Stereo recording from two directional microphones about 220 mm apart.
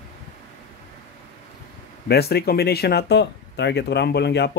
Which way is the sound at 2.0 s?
45° left (ahead or behind).